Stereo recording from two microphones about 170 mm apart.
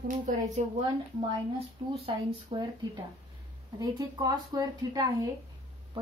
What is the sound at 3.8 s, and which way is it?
A woman's voice, 25° right (ahead or behind).